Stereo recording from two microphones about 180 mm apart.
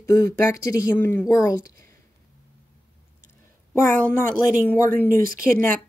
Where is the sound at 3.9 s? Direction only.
15° left (ahead or behind).